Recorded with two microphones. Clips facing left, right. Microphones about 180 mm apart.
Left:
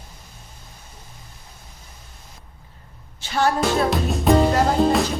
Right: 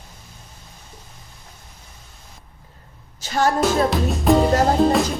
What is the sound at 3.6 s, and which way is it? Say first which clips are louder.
Speech: right 2 dB; centre (ahead or behind).